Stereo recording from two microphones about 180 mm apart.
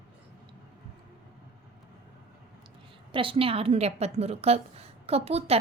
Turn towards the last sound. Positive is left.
turn(degrees=-35)  # may be behind; listen again after turning